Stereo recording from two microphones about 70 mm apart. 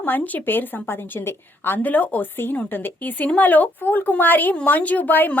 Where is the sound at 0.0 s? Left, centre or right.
Left.